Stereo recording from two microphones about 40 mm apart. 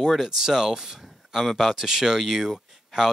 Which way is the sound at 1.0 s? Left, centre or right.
Centre.